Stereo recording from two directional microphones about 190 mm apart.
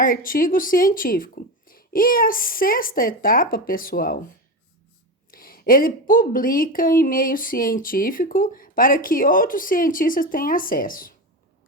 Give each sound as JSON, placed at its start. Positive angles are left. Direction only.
{"t": 0.0, "sound": "a woman's voice", "side_deg": 45}
{"t": 5.3, "sound": "a woman's voice", "side_deg": 50}